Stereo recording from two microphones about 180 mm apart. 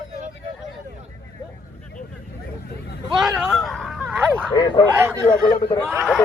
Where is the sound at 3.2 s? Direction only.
Centre (ahead or behind).